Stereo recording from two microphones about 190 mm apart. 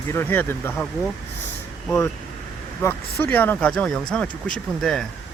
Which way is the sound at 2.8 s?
10° left (ahead or behind).